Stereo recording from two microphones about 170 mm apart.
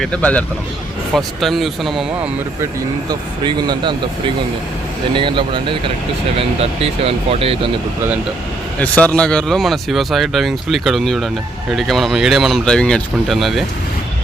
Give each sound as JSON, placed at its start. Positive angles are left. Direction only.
{"t": 0.0, "sound": "speech", "side_deg": 10}
{"t": 3.1, "sound": "speech", "side_deg": -25}
{"t": 5.1, "sound": "speech", "side_deg": -30}
{"t": 8.8, "sound": "speech", "side_deg": 10}